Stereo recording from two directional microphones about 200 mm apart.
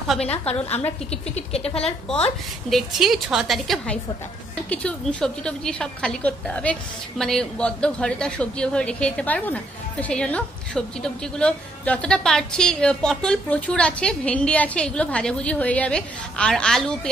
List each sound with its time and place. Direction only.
0.3 s speech: 30° left (ahead or behind)
2.7 s a woman's voice: centre (ahead or behind)